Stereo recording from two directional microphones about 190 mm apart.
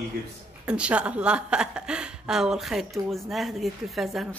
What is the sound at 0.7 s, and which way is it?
A woman's voice, 5° right (ahead or behind).